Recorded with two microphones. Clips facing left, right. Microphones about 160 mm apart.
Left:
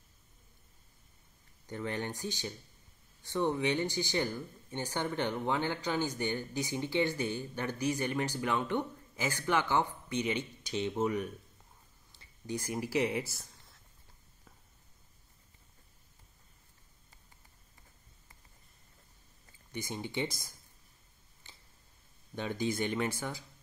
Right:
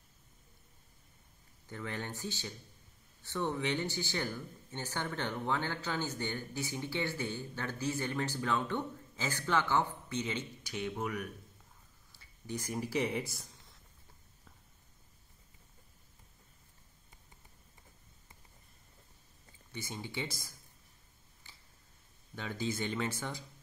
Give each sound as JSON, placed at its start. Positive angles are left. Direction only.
{"t": 1.7, "sound": "speech", "side_deg": 20}
{"t": 12.1, "sound": "speech", "side_deg": 10}
{"t": 19.7, "sound": "speech", "side_deg": 15}
{"t": 21.4, "sound": "a sound", "side_deg": 20}
{"t": 22.3, "sound": "speech", "side_deg": 20}